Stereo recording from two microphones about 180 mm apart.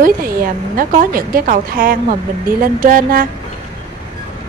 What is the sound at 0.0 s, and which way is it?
A woman's voice, 55° right (ahead or behind).